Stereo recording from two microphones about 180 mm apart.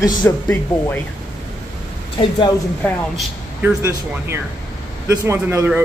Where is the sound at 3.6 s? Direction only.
15° right (ahead or behind).